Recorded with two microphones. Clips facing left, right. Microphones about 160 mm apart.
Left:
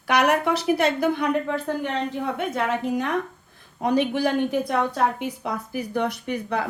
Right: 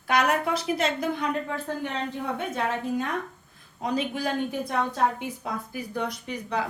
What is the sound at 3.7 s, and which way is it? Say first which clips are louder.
A woman's voice: left 6 dB; 65° left (ahead or behind).